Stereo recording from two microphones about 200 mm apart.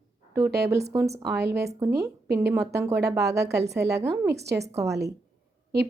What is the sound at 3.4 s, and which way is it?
Speech, 55° right (ahead or behind).